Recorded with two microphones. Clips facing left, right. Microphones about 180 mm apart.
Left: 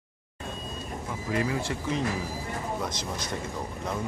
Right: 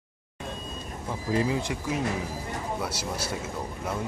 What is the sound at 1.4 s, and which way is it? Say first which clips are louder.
A man's voice: right 1 dB; 20° right (ahead or behind).